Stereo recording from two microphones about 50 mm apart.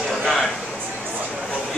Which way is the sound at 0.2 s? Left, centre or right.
Centre.